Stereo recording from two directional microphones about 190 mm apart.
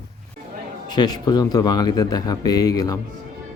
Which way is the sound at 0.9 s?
20° left (ahead or behind).